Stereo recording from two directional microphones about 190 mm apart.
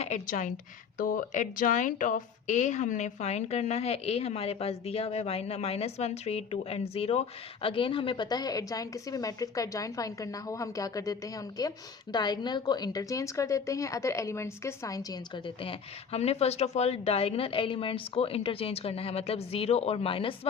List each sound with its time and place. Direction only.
0.0 s a woman's voice: 40° left (ahead or behind)